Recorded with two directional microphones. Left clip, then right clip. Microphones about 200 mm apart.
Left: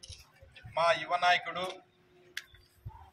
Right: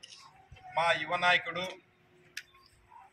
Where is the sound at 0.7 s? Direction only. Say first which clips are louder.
Left 1 dB; centre (ahead or behind).